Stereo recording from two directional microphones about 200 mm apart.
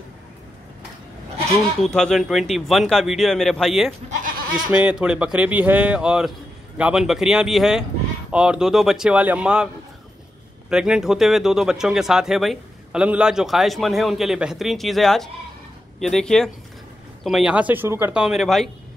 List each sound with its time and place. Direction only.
1.8 s speech: 5° left (ahead or behind)
4.1 s goat: 45° right (ahead or behind)
4.7 s speech: 5° right (ahead or behind)
10.7 s speech: 5° right (ahead or behind)